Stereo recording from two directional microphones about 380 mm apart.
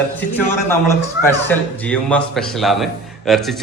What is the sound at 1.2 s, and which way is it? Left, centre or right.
A man's voice, centre.